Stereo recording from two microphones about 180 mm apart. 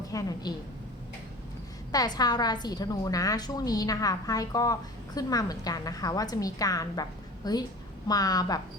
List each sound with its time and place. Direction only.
0.1 s a woman's voice: 20° left (ahead or behind)
1.9 s a woman's voice: 20° left (ahead or behind)